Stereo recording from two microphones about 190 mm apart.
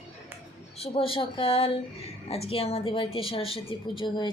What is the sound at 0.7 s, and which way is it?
A woman's voice, 30° left (ahead or behind).